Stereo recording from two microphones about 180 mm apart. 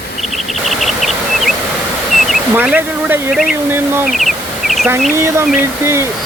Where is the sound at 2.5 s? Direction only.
10° right (ahead or behind).